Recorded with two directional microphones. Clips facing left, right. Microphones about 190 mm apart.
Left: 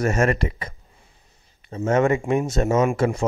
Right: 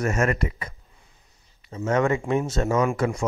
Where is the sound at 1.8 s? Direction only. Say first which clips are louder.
Left 3 dB; 25° left (ahead or behind).